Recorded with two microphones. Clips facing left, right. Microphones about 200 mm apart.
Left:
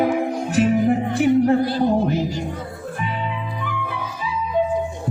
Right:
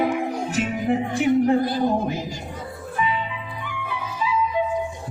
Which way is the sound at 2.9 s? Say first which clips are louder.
Right 4 dB; 50° left (ahead or behind).